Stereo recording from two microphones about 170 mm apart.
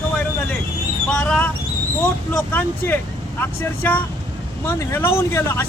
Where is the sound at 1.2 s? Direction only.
5° left (ahead or behind).